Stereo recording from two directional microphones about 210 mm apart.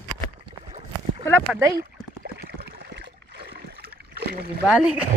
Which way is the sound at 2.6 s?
50° right (ahead or behind).